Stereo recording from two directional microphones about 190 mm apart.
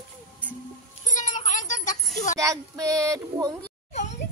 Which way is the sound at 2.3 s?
15° right (ahead or behind).